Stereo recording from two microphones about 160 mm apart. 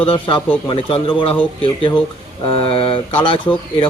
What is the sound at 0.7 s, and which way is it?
Speech, 30° left (ahead or behind).